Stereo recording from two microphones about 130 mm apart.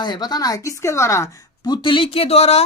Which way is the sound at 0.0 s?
35° left (ahead or behind).